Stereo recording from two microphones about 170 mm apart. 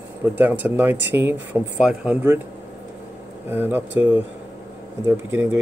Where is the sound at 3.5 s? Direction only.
10° right (ahead or behind).